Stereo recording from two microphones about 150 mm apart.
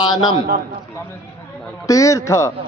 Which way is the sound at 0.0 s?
30° left (ahead or behind).